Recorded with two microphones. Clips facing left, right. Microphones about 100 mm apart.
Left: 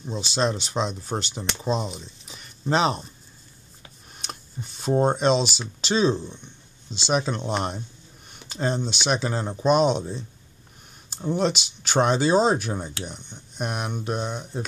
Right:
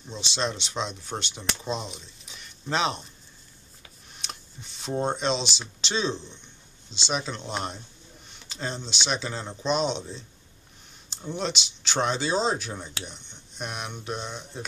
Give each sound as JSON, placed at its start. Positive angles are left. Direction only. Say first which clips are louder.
{"t": 0.1, "sound": "speech", "louder": "left 5 dB", "side_deg": 40}
{"t": 1.8, "sound": "speech", "louder": "left 6 dB", "side_deg": 0}
{"t": 2.6, "sound": "speech", "louder": "left 5 dB", "side_deg": 40}
{"t": 4.3, "sound": "a sound", "louder": "left 6 dB", "side_deg": 45}
{"t": 4.9, "sound": "speech", "louder": "left 6 dB", "side_deg": 40}
{"t": 5.3, "sound": "speech", "louder": "left 6 dB", "side_deg": 5}
{"t": 5.8, "sound": "speech", "louder": "left 7 dB", "side_deg": 45}
{"t": 11.3, "sound": "speech", "louder": "left 6 dB", "side_deg": 45}